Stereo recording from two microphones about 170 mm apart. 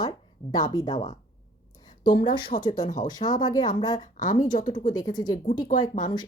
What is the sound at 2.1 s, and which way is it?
Speech, 30° left (ahead or behind).